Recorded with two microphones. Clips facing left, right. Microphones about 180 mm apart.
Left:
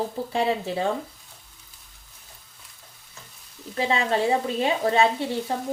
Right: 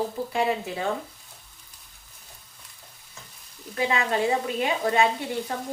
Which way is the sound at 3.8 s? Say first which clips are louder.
Left 1 dB; 30° left (ahead or behind).